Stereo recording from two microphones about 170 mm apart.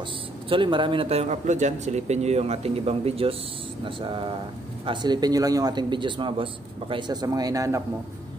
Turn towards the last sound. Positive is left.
turn(degrees=-20)  # may be behind; listen again after turning